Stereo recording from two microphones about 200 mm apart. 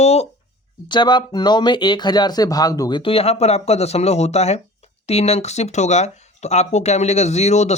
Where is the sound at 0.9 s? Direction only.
20° left (ahead or behind).